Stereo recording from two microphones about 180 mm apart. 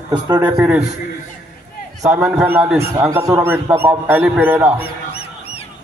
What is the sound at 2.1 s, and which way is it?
Speech, 5° right (ahead or behind).